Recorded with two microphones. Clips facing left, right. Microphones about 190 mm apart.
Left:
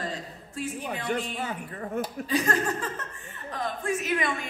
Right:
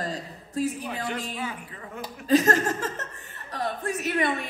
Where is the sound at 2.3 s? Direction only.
40° right (ahead or behind).